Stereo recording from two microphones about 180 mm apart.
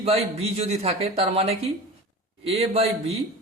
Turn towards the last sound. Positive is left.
turn(degrees=-35)  # may be behind; listen again after turning